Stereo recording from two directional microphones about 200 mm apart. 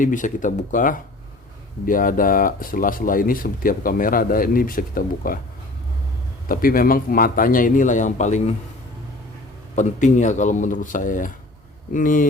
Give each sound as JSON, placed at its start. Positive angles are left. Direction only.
{"t": 0.0, "sound": "speech", "side_deg": 40}
{"t": 6.5, "sound": "speech", "side_deg": 45}
{"t": 9.7, "sound": "speech", "side_deg": 35}